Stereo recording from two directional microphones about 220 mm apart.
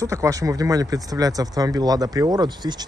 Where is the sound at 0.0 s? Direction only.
15° right (ahead or behind).